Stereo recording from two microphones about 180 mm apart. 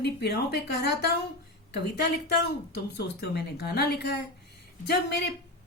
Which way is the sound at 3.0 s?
65° left (ahead or behind).